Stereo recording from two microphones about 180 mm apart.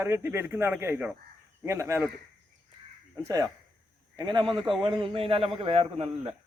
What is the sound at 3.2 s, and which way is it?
A man's voice, 20° right (ahead or behind).